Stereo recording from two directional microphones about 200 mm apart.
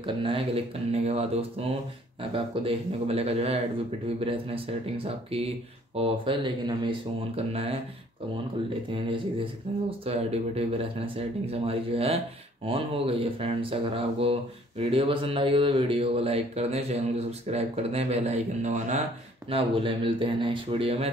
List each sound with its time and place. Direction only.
0.0 s speech: 25° right (ahead or behind)
8.9 s speech: 25° right (ahead or behind)
19.5 s speech: 25° right (ahead or behind)